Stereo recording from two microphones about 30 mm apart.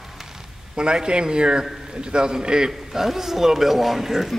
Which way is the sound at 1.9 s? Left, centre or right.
Right.